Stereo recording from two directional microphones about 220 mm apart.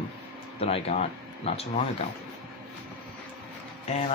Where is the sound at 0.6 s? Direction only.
25° left (ahead or behind).